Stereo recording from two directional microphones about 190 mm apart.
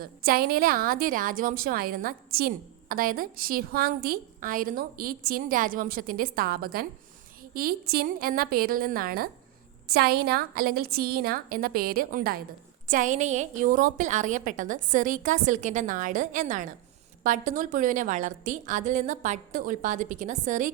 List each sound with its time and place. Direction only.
0.0 s a woman's voice: 50° right (ahead or behind)